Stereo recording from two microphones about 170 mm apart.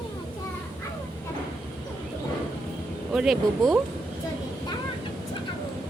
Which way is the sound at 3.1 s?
Centre (ahead or behind).